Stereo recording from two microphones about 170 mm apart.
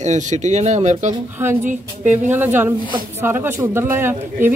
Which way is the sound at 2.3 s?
10° right (ahead or behind).